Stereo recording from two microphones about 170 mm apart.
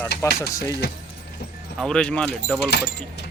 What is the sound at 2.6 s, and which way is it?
Speech, 80° left.